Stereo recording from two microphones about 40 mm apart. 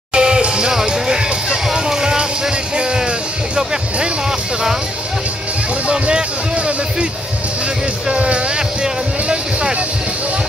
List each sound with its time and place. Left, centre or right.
0.1 s music: centre
5.9 s speech: right
8.1 s vehicle: right